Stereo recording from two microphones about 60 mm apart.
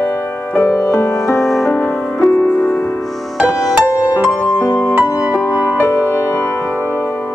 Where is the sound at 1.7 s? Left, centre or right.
Left.